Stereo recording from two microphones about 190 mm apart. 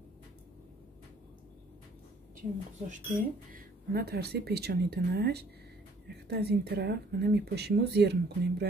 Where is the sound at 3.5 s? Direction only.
55° right (ahead or behind).